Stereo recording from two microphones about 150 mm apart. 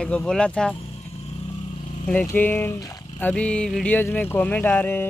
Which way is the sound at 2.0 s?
10° left (ahead or behind).